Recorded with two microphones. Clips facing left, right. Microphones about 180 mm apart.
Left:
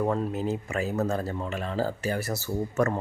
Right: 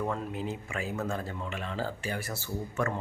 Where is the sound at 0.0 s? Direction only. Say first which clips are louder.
Left 6 dB; 40° left (ahead or behind).